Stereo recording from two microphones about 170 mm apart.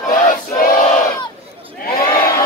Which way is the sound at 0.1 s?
55° left (ahead or behind).